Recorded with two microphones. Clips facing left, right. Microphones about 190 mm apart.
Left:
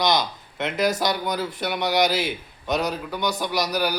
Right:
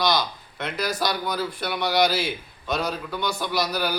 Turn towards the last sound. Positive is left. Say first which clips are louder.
# left 2 dB
turn(degrees=15)  # may be behind; listen again after turning